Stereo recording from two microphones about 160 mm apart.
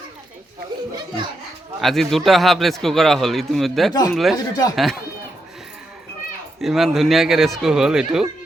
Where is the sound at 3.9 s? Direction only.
25° left (ahead or behind).